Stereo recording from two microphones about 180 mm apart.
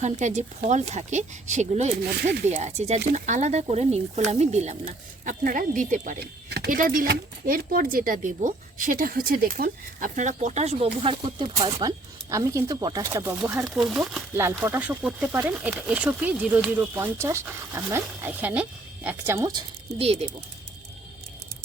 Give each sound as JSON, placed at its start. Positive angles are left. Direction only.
{"t": 0.0, "sound": "speech", "side_deg": -40}
{"t": 6.5, "sound": "speech", "side_deg": -55}
{"t": 13.7, "sound": "speech", "side_deg": 0}